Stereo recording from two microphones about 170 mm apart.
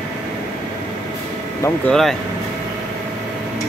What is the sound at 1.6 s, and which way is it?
Speech, 5° left (ahead or behind).